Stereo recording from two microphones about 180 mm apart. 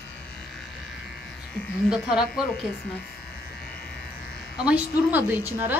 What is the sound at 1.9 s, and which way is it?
Speech, 5° right (ahead or behind).